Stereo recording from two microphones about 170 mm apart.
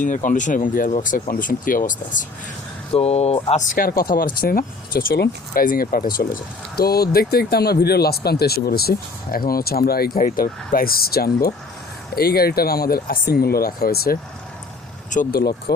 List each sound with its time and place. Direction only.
0.0 s speech: 50° left (ahead or behind)
2.9 s speech: 40° left (ahead or behind)
3.5 s speech: 50° left (ahead or behind)